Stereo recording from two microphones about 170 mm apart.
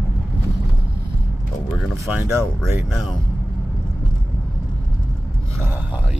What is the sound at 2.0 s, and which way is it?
Speech, 10° right (ahead or behind).